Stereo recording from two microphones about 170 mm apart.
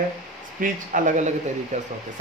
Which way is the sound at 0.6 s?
50° right (ahead or behind).